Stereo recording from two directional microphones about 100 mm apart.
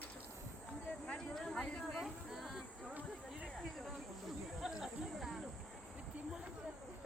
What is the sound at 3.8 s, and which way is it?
Snake, centre (ahead or behind).